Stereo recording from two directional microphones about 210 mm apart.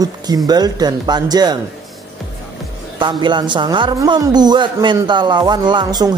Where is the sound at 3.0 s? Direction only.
20° right (ahead or behind).